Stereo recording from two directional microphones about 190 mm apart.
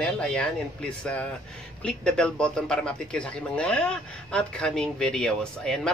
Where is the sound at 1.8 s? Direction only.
5° left (ahead or behind).